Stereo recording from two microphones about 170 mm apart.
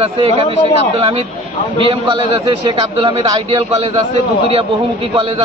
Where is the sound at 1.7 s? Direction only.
30° right (ahead or behind).